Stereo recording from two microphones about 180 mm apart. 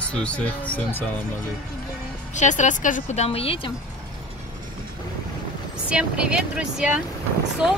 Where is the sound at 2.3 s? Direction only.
40° left (ahead or behind).